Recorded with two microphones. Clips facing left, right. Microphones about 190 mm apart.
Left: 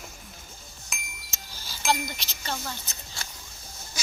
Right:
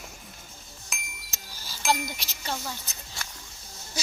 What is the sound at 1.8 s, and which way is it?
Speech, centre (ahead or behind).